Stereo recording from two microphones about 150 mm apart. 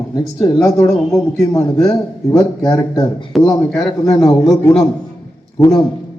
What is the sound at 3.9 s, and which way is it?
Speech, 25° left (ahead or behind).